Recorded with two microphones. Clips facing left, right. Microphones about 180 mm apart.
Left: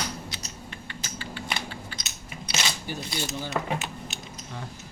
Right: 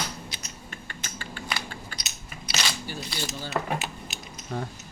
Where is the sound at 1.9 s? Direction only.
45° right (ahead or behind).